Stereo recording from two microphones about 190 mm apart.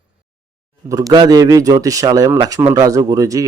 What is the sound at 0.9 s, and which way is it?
Speech, 20° right (ahead or behind).